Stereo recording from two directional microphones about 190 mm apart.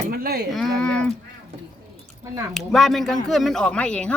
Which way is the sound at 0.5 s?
5° left (ahead or behind).